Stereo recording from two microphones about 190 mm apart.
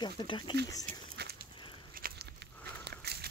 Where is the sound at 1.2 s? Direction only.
55° right (ahead or behind).